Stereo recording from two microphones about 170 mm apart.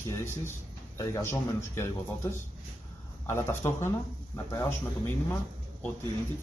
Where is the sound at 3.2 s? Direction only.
15° left (ahead or behind).